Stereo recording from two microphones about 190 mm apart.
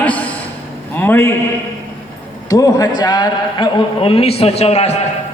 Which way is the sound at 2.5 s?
20° left (ahead or behind).